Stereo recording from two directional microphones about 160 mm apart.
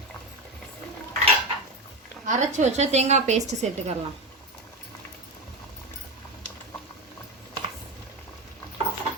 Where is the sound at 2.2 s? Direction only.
50° right (ahead or behind).